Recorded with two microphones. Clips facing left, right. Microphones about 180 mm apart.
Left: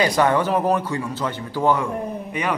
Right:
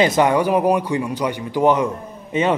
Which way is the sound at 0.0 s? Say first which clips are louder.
Right 3 dB; 20° right (ahead or behind).